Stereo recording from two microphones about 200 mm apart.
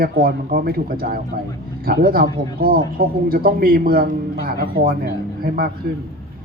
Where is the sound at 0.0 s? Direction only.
45° right (ahead or behind).